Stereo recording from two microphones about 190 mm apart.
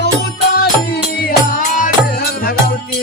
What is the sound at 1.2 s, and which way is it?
Music, 50° left (ahead or behind).